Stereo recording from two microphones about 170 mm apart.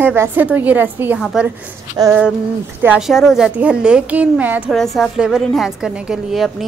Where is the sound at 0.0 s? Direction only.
10° right (ahead or behind).